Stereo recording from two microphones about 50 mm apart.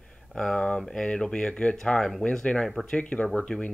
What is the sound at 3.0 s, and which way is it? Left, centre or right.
Speech, left.